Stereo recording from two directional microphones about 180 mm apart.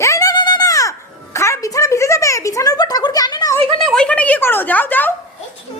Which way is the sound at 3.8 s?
5° left (ahead or behind).